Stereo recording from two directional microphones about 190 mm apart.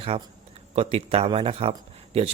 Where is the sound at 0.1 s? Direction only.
30° right (ahead or behind).